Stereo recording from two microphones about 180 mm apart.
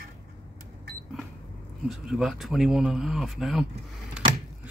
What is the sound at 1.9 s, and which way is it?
Speech, centre (ahead or behind).